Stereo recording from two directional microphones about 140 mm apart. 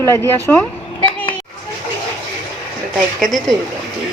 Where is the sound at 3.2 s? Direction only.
Centre (ahead or behind).